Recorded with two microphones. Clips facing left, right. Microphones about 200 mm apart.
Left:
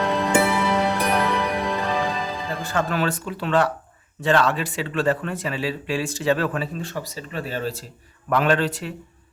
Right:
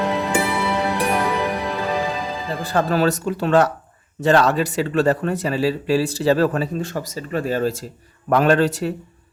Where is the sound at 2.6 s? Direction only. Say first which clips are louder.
Right 6 dB; 35° right (ahead or behind).